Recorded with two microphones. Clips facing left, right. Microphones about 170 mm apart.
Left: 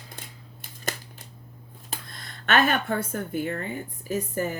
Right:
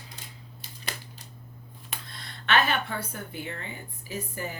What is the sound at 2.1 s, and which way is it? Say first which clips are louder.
A woman's voice: left 2 dB; 45° left (ahead or behind).